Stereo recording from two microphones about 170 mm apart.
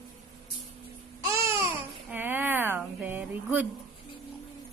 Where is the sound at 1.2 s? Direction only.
15° right (ahead or behind).